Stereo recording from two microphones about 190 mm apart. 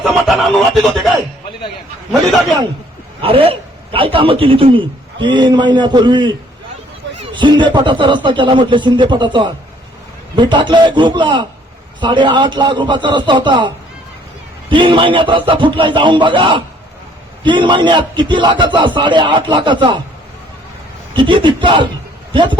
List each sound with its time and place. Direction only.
0.0 s a sound: centre (ahead or behind)
0.8 s speech: centre (ahead or behind)
3.2 s a man's voice: 30° right (ahead or behind)
7.3 s a man's voice: 25° right (ahead or behind)
14.7 s a man's voice: 25° right (ahead or behind)
21.2 s a man's voice: 25° right (ahead or behind)